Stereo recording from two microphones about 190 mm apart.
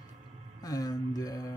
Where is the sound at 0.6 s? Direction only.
20° left (ahead or behind).